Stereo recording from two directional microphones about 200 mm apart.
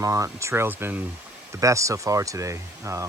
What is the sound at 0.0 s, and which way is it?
Speech, 15° right (ahead or behind).